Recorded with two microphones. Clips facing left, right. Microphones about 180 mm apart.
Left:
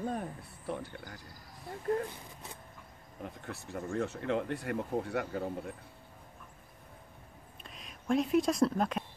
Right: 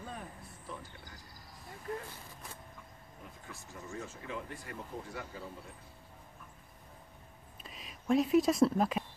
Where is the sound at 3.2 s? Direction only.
70° left (ahead or behind).